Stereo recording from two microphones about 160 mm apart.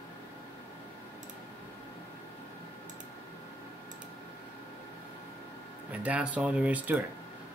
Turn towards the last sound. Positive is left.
turn(degrees=-10)  # may be behind; listen again after turning